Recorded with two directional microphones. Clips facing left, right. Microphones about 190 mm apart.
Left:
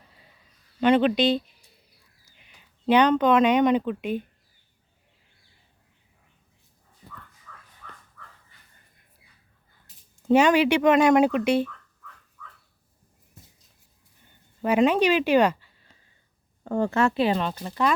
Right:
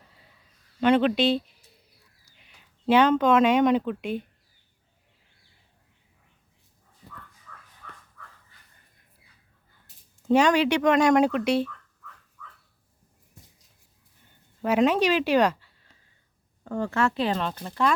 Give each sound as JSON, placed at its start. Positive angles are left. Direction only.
{"t": 0.8, "sound": "speech", "side_deg": 0}
{"t": 10.2, "sound": "speech", "side_deg": 5}
{"t": 14.6, "sound": "speech", "side_deg": 0}
{"t": 16.6, "sound": "speech", "side_deg": 30}
{"t": 16.9, "sound": "speech", "side_deg": 20}
{"t": 17.2, "sound": "speech", "side_deg": 10}